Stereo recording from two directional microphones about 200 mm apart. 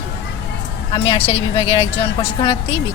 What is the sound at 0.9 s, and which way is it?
Speech, 30° left (ahead or behind).